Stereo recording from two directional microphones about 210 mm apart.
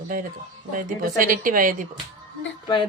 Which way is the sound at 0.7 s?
40° right (ahead or behind).